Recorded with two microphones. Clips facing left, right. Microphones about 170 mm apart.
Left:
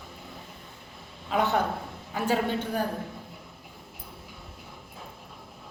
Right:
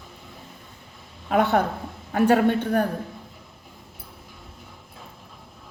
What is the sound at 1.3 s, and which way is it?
A woman's voice, 55° right (ahead or behind).